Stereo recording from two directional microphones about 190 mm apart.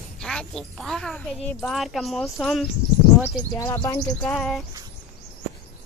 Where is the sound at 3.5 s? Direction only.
15° left (ahead or behind).